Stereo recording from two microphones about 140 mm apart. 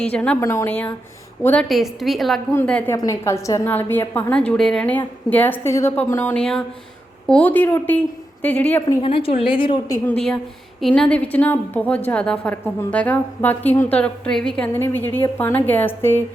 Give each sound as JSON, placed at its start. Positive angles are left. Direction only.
{"t": 0.0, "sound": "a woman's voice", "side_deg": 10}
{"t": 0.3, "sound": "a woman's voice", "side_deg": 20}
{"t": 1.6, "sound": "a woman's voice", "side_deg": 0}
{"t": 2.9, "sound": "a woman's voice", "side_deg": 20}
{"t": 9.0, "sound": "a woman's voice", "side_deg": 40}
{"t": 10.1, "sound": "a woman's voice", "side_deg": 5}